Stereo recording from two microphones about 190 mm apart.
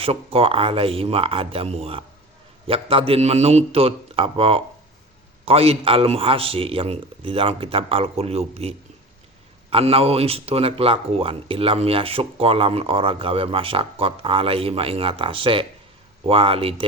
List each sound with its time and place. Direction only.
0.0 s a man's voice: 30° right (ahead or behind)